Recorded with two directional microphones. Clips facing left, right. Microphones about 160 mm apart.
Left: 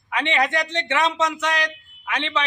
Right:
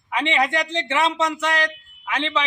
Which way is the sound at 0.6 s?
30° right (ahead or behind).